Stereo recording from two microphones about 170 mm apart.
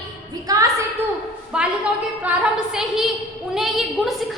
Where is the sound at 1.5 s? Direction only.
5° right (ahead or behind).